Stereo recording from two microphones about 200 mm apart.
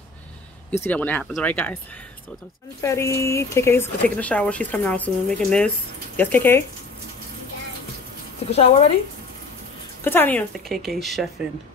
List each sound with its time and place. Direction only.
0.7 s speech: 10° left (ahead or behind)
2.8 s speech: 15° left (ahead or behind)
8.5 s speech: 30° left (ahead or behind)
10.0 s a woman's voice: 10° left (ahead or behind)